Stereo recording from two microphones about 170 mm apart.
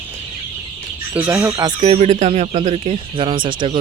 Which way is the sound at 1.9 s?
40° right (ahead or behind).